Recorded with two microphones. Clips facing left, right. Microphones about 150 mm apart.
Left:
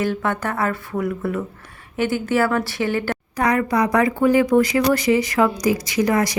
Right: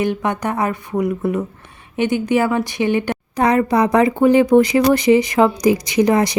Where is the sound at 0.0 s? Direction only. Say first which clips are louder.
Right 3 dB; 20° right (ahead or behind).